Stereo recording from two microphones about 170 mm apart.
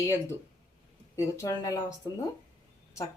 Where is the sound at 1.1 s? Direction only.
20° left (ahead or behind).